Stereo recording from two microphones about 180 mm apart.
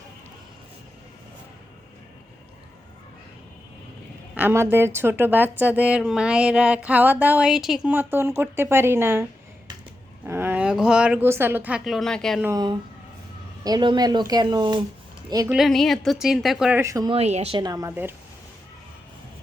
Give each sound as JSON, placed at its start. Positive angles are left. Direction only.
{"t": 4.4, "sound": "a woman's voice", "side_deg": -10}
{"t": 10.2, "sound": "a woman's voice", "side_deg": -10}
{"t": 13.7, "sound": "speech", "side_deg": -25}
{"t": 15.4, "sound": "a woman's voice", "side_deg": 0}
{"t": 16.8, "sound": "a woman's voice", "side_deg": -15}
{"t": 17.1, "sound": "speech", "side_deg": -35}